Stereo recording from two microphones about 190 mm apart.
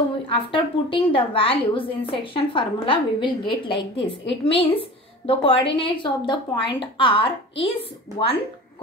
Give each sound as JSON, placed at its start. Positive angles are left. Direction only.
{"t": 0.3, "sound": "a woman's voice", "side_deg": 25}